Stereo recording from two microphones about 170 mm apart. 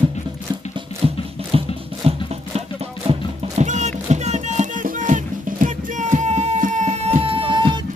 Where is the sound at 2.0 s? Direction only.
35° right (ahead or behind).